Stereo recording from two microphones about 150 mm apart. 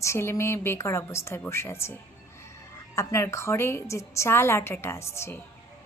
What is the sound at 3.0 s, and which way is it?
A woman's voice, 20° left (ahead or behind).